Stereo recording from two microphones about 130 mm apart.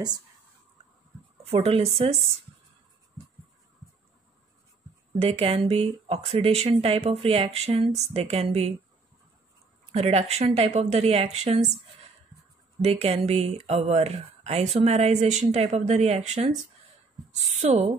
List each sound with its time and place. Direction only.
1.5 s speech: 50° right (ahead or behind)
5.2 s speech: 45° right (ahead or behind)
9.9 s speech: 55° right (ahead or behind)
12.8 s speech: 50° right (ahead or behind)
17.6 s speech: 65° right (ahead or behind)